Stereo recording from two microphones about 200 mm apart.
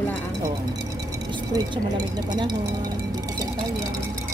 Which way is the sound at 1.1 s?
20° right (ahead or behind).